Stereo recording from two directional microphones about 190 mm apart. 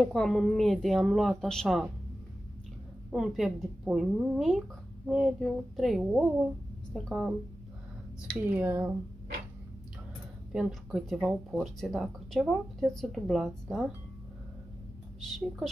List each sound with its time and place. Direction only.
0.0 s speech: centre (ahead or behind)
3.1 s speech: centre (ahead or behind)
8.3 s speech: 10° right (ahead or behind)
10.5 s speech: 5° right (ahead or behind)
15.2 s speech: centre (ahead or behind)